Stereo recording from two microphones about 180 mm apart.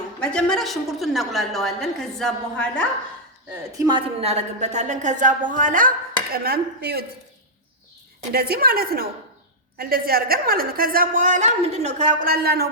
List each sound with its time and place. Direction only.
0.2 s a woman's voice: 5° left (ahead or behind)
3.7 s a woman's voice: 20° right (ahead or behind); by 5.9 s 45° right (ahead or behind)
6.3 s a woman's voice: 60° right (ahead or behind)
8.3 s a woman's voice: 55° right (ahead or behind)